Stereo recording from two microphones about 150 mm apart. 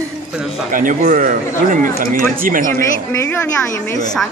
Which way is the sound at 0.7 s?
60° right (ahead or behind).